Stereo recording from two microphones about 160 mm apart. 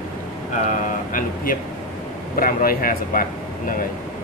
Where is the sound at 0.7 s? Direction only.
60° left (ahead or behind).